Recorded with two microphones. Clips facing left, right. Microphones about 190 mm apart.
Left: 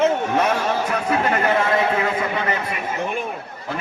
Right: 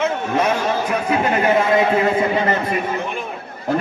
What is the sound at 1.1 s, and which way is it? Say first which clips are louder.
Speech: right 1 dB; 10° right (ahead or behind).